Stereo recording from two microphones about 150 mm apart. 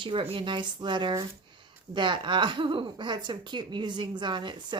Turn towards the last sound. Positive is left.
turn(degrees=-30)  # may be behind; listen again after turning